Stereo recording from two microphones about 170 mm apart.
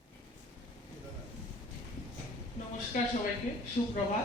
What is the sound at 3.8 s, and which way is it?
Speech, 30° left (ahead or behind).